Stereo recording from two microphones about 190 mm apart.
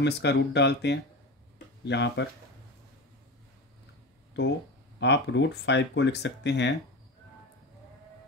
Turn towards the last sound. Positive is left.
turn(degrees=65)  # may be behind; listen again after turning